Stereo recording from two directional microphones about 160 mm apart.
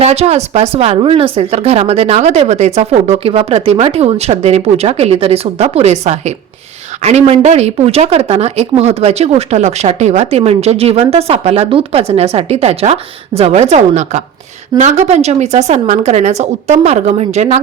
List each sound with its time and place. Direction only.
0.0 s a woman's voice: 40° right (ahead or behind)